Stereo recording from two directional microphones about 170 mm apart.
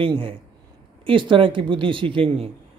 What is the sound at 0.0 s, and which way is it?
A man's voice, 30° right (ahead or behind).